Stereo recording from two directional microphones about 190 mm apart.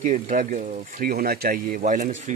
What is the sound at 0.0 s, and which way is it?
Speech, 40° right (ahead or behind).